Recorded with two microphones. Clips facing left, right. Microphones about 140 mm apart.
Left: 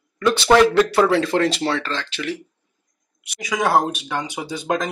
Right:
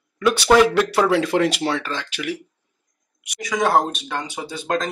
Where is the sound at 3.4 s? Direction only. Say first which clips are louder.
Even; 5° left (ahead or behind).